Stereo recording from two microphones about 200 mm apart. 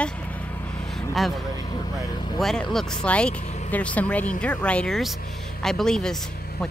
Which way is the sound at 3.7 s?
5° left (ahead or behind).